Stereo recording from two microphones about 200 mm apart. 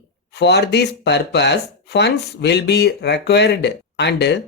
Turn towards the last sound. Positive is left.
turn(degrees=60)  # may be behind; listen again after turning